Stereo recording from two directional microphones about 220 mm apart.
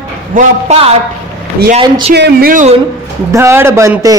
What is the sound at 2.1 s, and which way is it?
Speech, 45° right (ahead or behind).